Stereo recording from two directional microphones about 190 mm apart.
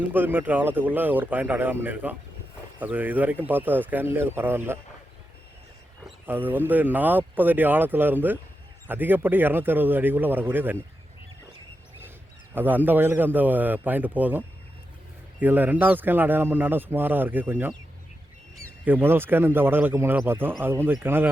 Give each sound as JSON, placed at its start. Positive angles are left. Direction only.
{"t": 0.0, "sound": "speech", "side_deg": -10}
{"t": 6.1, "sound": "speech", "side_deg": -10}
{"t": 12.5, "sound": "speech", "side_deg": -10}